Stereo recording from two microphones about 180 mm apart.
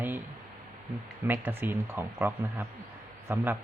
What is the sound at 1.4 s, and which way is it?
Speech, 10° right (ahead or behind).